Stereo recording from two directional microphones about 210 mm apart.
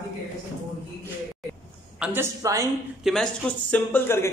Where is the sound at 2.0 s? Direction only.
10° right (ahead or behind).